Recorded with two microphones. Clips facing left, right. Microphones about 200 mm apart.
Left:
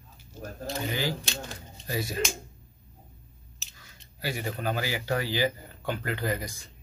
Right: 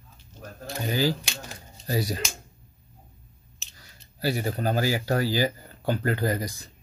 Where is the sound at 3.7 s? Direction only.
35° right (ahead or behind).